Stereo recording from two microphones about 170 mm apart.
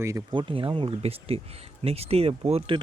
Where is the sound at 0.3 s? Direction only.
30° right (ahead or behind).